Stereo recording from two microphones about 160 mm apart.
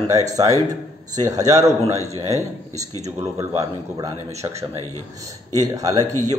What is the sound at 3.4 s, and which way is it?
Speech, 20° right (ahead or behind).